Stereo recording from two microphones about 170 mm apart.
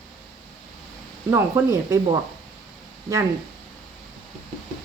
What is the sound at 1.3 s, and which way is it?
Speech, 15° right (ahead or behind).